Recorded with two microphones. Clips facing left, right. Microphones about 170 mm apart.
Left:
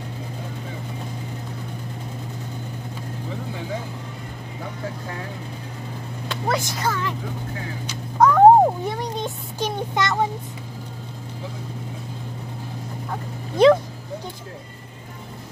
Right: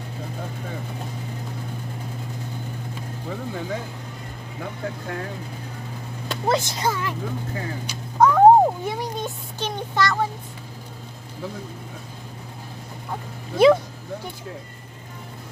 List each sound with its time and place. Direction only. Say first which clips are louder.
6.4 s speech: right 2 dB; 25° right (ahead or behind)
6.9 s speech: even; 10° right (ahead or behind)
8.2 s a child's voice: left 1 dB; centre (ahead or behind)
9.9 s a child's voice: even; 20° left (ahead or behind)
13.6 s speech: left 1 dB; 5° right (ahead or behind)